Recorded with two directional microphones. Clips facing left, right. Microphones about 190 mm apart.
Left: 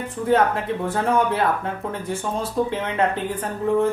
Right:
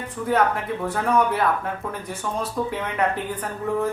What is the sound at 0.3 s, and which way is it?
Speech, 25° left (ahead or behind).